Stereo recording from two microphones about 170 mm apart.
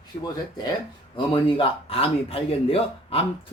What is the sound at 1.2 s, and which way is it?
A man's voice, 30° left (ahead or behind).